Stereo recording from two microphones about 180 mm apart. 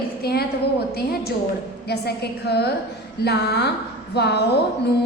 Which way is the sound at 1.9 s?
65° left (ahead or behind).